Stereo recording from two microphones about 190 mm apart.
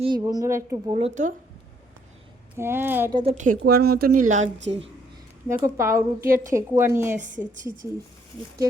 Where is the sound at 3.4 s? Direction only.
50° right (ahead or behind).